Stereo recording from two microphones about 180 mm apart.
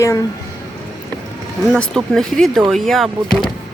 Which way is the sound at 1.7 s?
5° left (ahead or behind).